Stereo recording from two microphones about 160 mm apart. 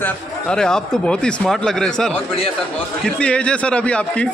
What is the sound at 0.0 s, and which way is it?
Speech, 5° left (ahead or behind).